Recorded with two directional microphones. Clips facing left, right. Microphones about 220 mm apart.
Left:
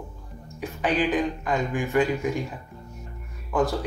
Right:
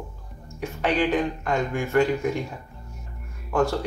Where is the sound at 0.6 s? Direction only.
Centre (ahead or behind).